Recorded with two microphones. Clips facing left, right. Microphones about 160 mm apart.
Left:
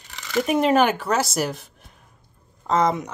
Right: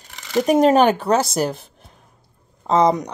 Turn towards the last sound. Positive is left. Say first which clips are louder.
# right 4 dB
turn(degrees=-35)  # may be behind; listen again after turning